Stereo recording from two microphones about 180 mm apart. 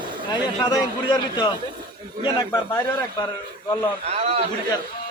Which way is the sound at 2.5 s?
15° left (ahead or behind).